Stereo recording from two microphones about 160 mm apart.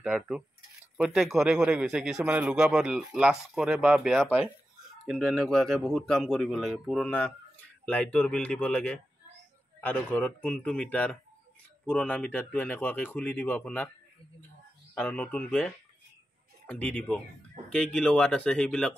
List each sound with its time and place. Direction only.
0.0 s speech: 5° right (ahead or behind); by 13.8 s 10° left (ahead or behind)
15.0 s speech: 10° left (ahead or behind)